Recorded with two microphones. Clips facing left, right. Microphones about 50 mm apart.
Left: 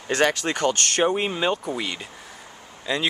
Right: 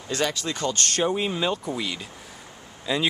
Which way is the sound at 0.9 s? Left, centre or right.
Left.